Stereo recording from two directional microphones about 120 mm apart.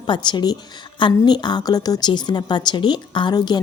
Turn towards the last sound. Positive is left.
turn(degrees=40)  # may be behind; listen again after turning